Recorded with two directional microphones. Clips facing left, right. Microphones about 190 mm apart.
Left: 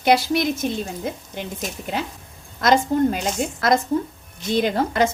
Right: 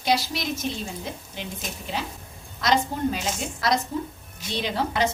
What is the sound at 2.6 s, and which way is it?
A woman's voice, 50° left (ahead or behind).